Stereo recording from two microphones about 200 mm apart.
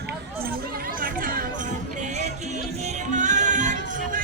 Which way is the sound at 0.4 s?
45° right (ahead or behind).